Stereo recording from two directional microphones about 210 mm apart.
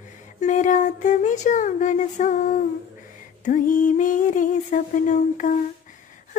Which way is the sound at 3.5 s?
40° left (ahead or behind).